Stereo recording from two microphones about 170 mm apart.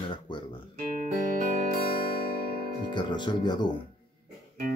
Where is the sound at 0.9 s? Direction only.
50° right (ahead or behind).